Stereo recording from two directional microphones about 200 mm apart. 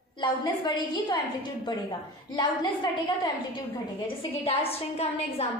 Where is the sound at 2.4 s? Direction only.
20° left (ahead or behind).